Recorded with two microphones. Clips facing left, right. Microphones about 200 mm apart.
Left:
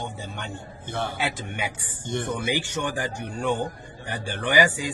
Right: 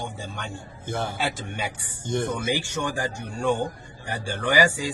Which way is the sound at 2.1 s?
45° right (ahead or behind).